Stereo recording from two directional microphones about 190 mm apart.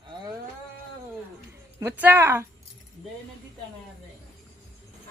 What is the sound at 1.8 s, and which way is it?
Speech, 10° right (ahead or behind).